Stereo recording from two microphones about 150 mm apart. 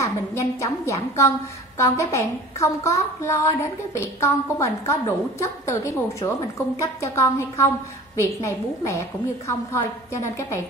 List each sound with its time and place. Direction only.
0.0 s a woman's voice: 20° left (ahead or behind)